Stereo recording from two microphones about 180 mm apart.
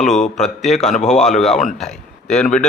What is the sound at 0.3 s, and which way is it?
Speech, centre (ahead or behind).